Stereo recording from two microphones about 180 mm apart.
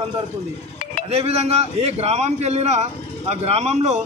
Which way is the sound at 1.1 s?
35° right (ahead or behind).